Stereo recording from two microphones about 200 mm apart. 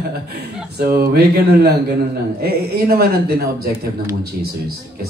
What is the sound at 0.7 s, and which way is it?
Speech, 50° right (ahead or behind).